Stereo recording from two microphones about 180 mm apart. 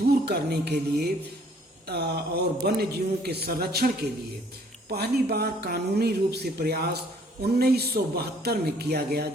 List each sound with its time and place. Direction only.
0.3 s speech: 65° right (ahead or behind)
4.9 s speech: 60° right (ahead or behind)